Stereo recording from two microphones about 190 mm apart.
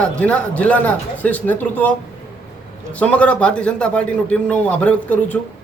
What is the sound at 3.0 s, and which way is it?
A man's voice, 5° left (ahead or behind).